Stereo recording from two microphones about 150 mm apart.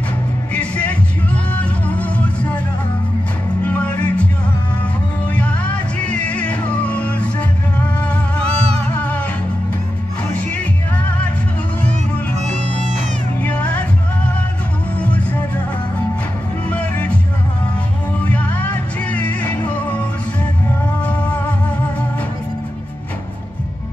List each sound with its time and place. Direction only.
0.5 s music: 10° left (ahead or behind)
3.6 s music: 10° left (ahead or behind)
8.6 s music: 45° right (ahead or behind)
8.9 s music: 10° left (ahead or behind)
10.5 s music: 10° left (ahead or behind)
13.4 s music: 10° left (ahead or behind)
16.6 s music: 10° left (ahead or behind)
18.2 s music: 10° left (ahead or behind)